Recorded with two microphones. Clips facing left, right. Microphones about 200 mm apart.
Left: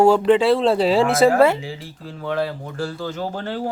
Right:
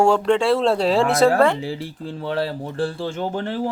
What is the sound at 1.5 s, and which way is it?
Speech, 35° right (ahead or behind).